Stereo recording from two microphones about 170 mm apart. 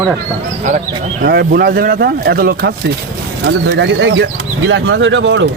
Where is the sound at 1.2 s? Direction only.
65° right (ahead or behind).